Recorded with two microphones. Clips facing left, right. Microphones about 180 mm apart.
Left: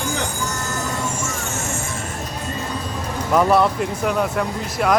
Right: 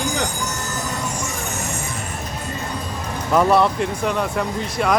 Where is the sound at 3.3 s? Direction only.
Centre (ahead or behind).